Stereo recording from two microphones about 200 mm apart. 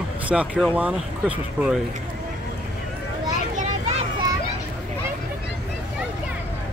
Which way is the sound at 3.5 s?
35° right (ahead or behind).